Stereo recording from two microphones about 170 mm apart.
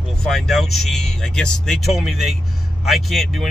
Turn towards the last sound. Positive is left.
turn(degrees=0)  # may be behind; listen again after turning